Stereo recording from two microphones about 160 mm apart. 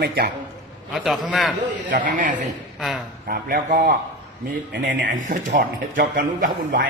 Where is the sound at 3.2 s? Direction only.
70° right (ahead or behind).